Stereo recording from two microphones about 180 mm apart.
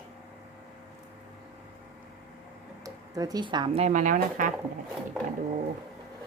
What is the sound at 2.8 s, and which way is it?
Speech, 20° right (ahead or behind).